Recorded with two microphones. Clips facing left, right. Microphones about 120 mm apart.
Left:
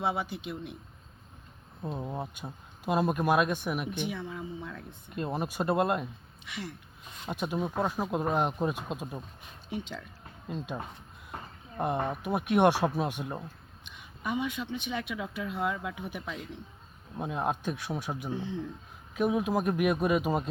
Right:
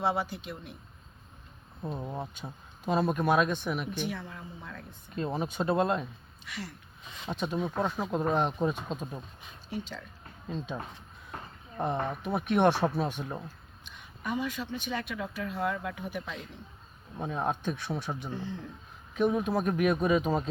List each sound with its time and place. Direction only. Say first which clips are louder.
0.3 s a woman's voice: left 3 dB; 20° left (ahead or behind)
1.9 s a woman's voice: left 1 dB; 5° left (ahead or behind)
7.3 s a woman's voice: even; 10° left (ahead or behind)